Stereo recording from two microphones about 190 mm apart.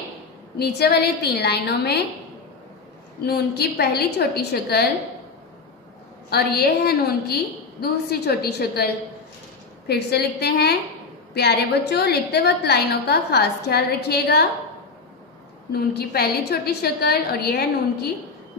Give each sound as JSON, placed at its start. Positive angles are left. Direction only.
{"t": 0.6, "sound": "a woman's voice", "side_deg": 60}
{"t": 3.3, "sound": "a woman's voice", "side_deg": 55}
{"t": 6.3, "sound": "a woman's voice", "side_deg": 55}
{"t": 9.8, "sound": "a woman's voice", "side_deg": 60}
{"t": 15.7, "sound": "a woman's voice", "side_deg": 55}